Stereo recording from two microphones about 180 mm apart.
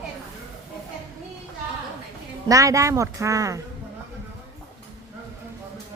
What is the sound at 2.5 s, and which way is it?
Speech, 20° right (ahead or behind).